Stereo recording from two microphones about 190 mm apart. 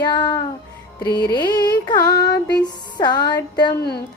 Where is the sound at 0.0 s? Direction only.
20° left (ahead or behind).